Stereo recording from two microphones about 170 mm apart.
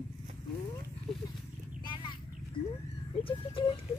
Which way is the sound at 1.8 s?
30° left (ahead or behind).